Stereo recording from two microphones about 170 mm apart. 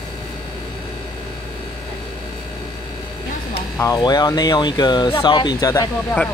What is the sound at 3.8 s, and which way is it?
Speech, 25° left (ahead or behind).